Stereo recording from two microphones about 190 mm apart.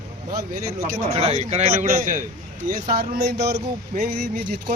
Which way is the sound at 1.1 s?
30° right (ahead or behind).